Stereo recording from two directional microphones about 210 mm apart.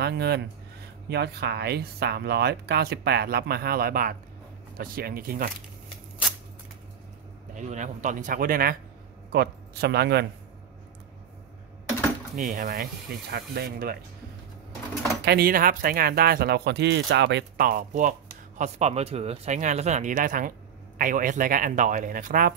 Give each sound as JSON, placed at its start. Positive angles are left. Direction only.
{"t": 0.0, "sound": "speech", "side_deg": -50}
{"t": 7.5, "sound": "a man's voice", "side_deg": -35}
{"t": 12.4, "sound": "speech", "side_deg": -45}
{"t": 15.2, "sound": "speech", "side_deg": -45}